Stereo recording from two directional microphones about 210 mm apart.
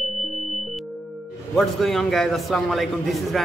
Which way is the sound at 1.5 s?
Centre (ahead or behind).